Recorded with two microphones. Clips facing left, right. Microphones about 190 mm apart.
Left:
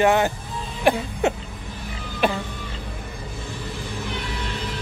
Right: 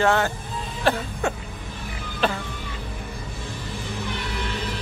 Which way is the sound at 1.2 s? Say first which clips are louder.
Left 5 dB; 20° left (ahead or behind).